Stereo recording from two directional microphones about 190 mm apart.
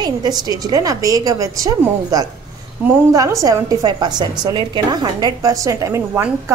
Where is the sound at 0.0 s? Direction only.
20° right (ahead or behind).